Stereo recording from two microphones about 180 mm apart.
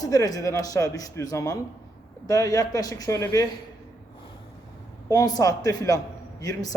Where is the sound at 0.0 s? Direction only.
20° left (ahead or behind).